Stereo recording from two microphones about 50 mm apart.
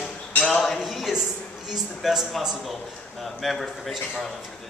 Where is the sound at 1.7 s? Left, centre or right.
Centre.